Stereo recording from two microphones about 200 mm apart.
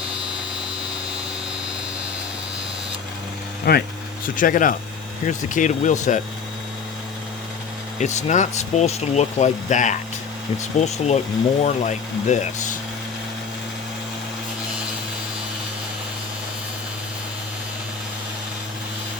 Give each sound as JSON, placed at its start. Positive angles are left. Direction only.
{"t": 3.7, "sound": "speech", "side_deg": 45}
{"t": 7.9, "sound": "speech", "side_deg": 35}